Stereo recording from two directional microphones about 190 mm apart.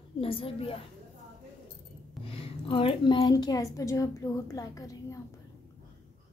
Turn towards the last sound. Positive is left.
turn(degrees=20)  # may be behind; listen again after turning